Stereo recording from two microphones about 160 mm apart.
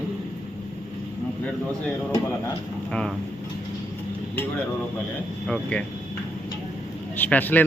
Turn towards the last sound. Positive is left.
turn(degrees=10)  # may be behind; listen again after turning